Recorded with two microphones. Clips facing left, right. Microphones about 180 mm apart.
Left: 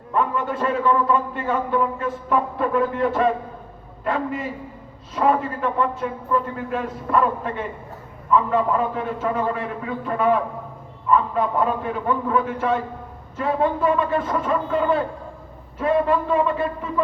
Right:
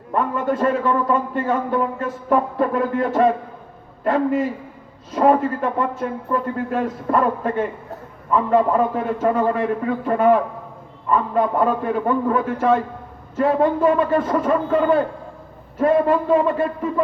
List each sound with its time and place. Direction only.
0.1 s a man's voice: 40° right (ahead or behind)